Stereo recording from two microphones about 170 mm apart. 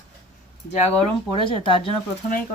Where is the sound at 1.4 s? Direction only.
30° left (ahead or behind).